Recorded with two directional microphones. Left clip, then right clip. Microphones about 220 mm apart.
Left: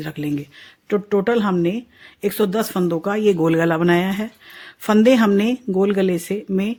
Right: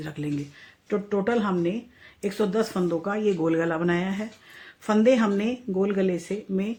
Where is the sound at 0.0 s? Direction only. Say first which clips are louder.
Left 6 dB; 45° left (ahead or behind).